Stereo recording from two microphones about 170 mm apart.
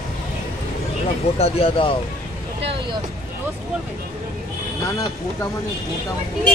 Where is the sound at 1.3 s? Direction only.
35° left (ahead or behind).